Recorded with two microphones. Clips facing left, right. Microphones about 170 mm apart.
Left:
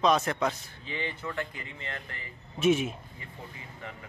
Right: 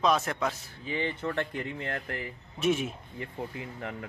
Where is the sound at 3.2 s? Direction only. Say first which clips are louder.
Right 9 dB; 60° right (ahead or behind).